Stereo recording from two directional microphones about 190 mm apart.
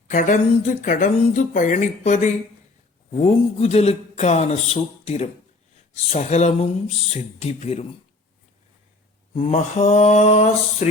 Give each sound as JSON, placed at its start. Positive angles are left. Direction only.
{"t": 0.1, "sound": "speech", "side_deg": 45}
{"t": 9.5, "sound": "speech", "side_deg": 35}